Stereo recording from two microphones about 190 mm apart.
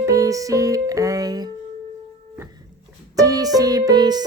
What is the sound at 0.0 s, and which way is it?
Music, 15° right (ahead or behind).